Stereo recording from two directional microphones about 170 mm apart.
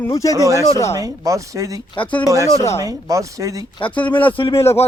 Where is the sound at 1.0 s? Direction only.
20° right (ahead or behind).